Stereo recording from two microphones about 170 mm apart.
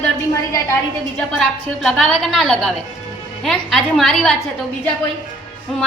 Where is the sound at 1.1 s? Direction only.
Centre (ahead or behind).